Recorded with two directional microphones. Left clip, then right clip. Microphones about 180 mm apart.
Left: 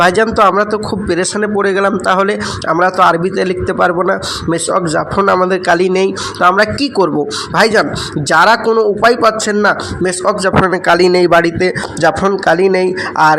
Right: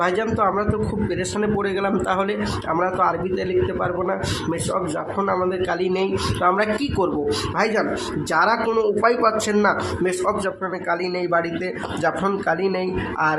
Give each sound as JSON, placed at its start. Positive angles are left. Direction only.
{"t": 0.0, "sound": "a man's voice", "side_deg": 40}
{"t": 10.7, "sound": "speech", "side_deg": 50}